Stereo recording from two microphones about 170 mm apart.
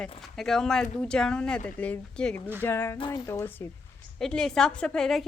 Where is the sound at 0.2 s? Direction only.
Centre (ahead or behind).